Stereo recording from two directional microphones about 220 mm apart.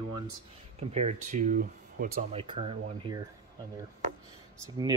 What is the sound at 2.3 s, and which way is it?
Speech, 25° right (ahead or behind).